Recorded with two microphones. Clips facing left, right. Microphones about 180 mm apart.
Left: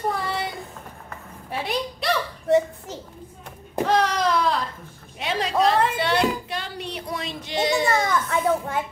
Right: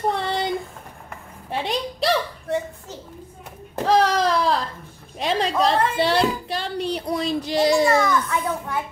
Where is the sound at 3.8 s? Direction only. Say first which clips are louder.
Right 3 dB; 35° right (ahead or behind).